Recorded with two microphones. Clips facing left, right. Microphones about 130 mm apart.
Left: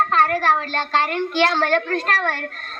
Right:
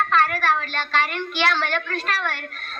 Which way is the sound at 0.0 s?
35° left (ahead or behind).